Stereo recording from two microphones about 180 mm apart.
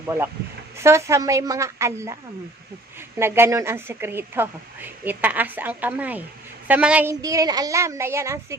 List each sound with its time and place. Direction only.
0.8 s a woman's voice: 15° right (ahead or behind)
3.2 s a woman's voice: 15° right (ahead or behind)